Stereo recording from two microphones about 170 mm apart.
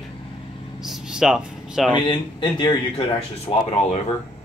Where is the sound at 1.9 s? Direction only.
25° left (ahead or behind).